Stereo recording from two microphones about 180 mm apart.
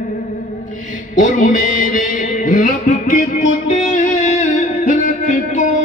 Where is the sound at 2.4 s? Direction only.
40° left (ahead or behind).